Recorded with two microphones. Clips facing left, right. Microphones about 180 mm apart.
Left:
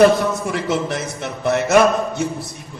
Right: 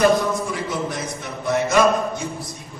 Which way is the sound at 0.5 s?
70° left (ahead or behind).